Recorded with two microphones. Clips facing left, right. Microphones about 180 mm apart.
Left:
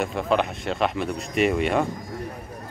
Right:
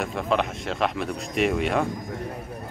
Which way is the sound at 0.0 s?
Centre (ahead or behind).